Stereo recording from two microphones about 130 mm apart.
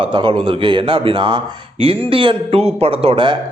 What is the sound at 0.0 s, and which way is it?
A man's voice, 40° right (ahead or behind).